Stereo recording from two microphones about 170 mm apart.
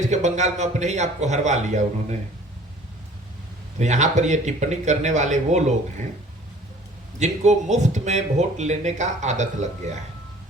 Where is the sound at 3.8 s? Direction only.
45° right (ahead or behind).